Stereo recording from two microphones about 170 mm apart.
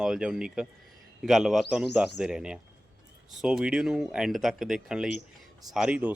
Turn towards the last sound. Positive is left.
turn(degrees=-5)  # may be behind; listen again after turning